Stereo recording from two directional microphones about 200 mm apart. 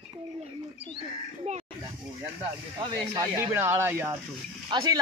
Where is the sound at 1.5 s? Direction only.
35° right (ahead or behind).